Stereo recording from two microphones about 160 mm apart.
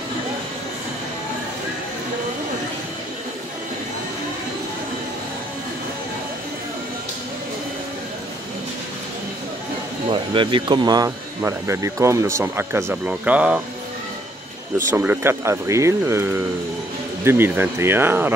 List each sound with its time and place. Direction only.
10.0 s speech: 30° right (ahead or behind); by 13.6 s 10° right (ahead or behind)
14.8 s speech: 15° right (ahead or behind)